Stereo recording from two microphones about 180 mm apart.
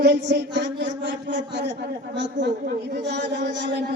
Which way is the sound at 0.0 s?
70° right (ahead or behind).